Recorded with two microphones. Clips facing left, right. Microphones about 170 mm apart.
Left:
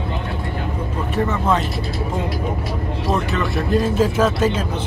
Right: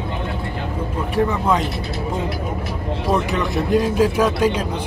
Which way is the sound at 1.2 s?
15° right (ahead or behind).